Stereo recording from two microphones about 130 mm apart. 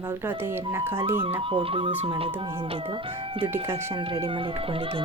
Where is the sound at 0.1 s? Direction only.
20° right (ahead or behind).